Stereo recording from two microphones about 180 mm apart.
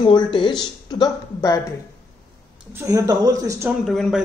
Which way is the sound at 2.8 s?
20° right (ahead or behind).